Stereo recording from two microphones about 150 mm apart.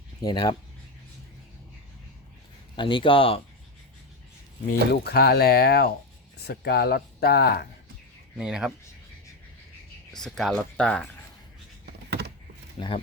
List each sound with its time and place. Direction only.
0.2 s speech: 25° left (ahead or behind)
2.7 s speech: 35° left (ahead or behind)
4.9 s speech: 90° left
8.4 s speech: 5° right (ahead or behind)
10.1 s speech: 5° left (ahead or behind)
12.7 s speech: 40° left (ahead or behind)